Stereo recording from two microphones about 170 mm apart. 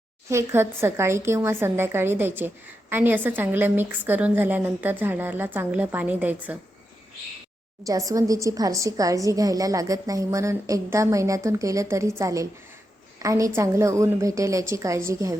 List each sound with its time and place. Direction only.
0.3 s a woman's voice: 15° right (ahead or behind)
7.9 s a woman's voice: 20° right (ahead or behind)